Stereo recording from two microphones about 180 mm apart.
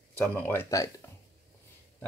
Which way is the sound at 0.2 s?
10° left (ahead or behind).